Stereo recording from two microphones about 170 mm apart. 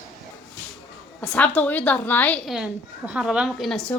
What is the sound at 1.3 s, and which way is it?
Speech, 10° left (ahead or behind).